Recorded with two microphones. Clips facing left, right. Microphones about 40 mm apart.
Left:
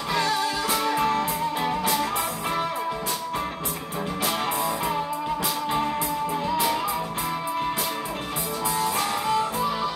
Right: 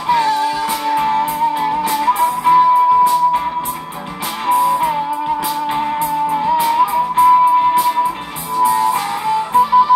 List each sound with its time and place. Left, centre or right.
0.1 s music: centre
0.9 s music: right
2.0 s music: right
6.3 s music: right
8.5 s music: centre